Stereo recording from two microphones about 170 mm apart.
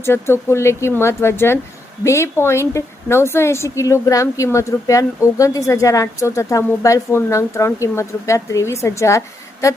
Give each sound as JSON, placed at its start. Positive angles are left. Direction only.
{"t": 0.0, "sound": "a woman's voice", "side_deg": 15}